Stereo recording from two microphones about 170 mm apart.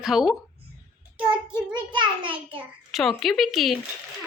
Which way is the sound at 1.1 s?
30° right (ahead or behind).